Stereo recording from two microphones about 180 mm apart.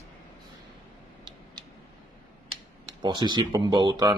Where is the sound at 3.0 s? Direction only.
25° right (ahead or behind).